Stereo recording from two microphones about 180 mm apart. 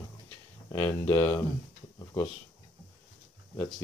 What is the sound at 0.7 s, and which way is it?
Speech, 15° left (ahead or behind).